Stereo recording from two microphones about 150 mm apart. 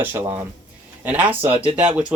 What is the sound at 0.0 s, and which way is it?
Speech, 15° right (ahead or behind).